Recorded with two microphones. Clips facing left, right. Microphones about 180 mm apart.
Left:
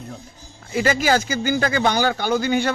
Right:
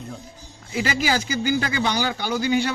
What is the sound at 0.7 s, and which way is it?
Speech, 45° left (ahead or behind).